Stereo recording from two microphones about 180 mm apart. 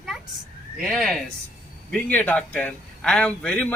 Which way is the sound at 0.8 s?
Centre (ahead or behind).